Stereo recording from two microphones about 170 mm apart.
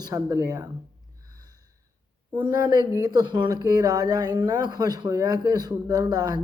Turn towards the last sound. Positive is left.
turn(degrees=-25)  # may be behind; listen again after turning